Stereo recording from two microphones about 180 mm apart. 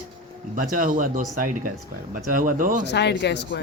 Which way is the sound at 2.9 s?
70° left (ahead or behind).